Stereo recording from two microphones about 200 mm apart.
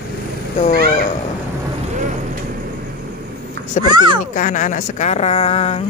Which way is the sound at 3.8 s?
35° left (ahead or behind).